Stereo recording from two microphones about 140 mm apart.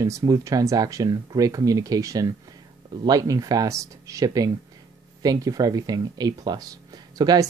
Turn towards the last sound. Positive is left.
turn(degrees=-30)  # may be behind; listen again after turning